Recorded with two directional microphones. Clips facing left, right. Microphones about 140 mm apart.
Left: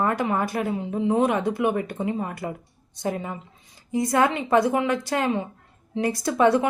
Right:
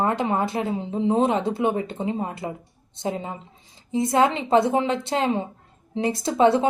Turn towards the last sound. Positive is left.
turn(degrees=-25)  # may be behind; listen again after turning